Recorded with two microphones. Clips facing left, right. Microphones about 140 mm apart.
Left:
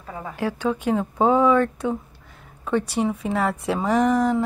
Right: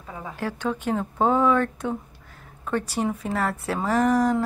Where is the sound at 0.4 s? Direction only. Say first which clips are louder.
Left 4 dB; 10° left (ahead or behind).